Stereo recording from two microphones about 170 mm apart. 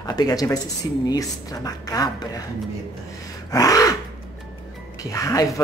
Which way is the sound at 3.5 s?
20° left (ahead or behind).